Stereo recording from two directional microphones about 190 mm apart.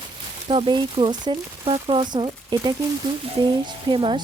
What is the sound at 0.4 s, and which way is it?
Speech, 30° right (ahead or behind).